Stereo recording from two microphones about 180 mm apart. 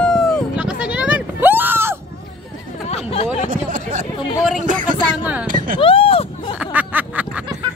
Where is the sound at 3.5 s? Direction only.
45° right (ahead or behind).